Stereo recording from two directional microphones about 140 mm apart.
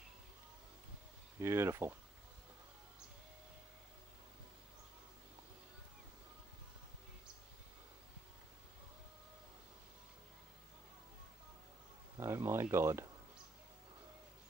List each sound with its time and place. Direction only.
1.4 s speech: 20° right (ahead or behind)
12.2 s speech: 20° right (ahead or behind)